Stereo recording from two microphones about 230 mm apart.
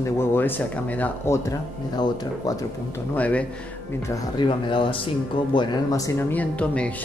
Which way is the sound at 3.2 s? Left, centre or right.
Centre.